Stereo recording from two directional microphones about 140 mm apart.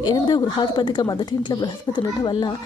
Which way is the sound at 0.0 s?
30° left (ahead or behind).